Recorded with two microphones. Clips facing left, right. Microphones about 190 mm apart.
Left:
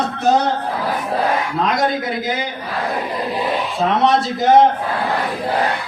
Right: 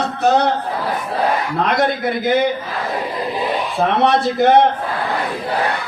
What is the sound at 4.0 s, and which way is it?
Speech, 60° right (ahead or behind).